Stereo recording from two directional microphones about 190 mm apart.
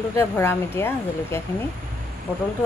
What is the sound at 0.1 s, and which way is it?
Speech, 15° left (ahead or behind).